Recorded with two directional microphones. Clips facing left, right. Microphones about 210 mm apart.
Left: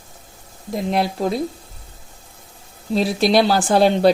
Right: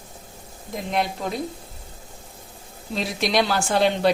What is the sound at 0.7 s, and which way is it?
Speech, 35° left (ahead or behind).